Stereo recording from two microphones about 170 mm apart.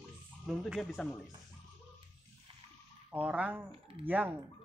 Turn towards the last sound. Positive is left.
turn(degrees=-10)  # may be behind; listen again after turning